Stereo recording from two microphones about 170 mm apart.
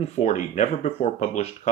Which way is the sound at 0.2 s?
45° left (ahead or behind).